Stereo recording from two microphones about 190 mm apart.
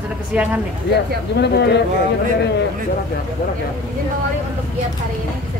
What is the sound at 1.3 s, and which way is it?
Speech, 65° left (ahead or behind).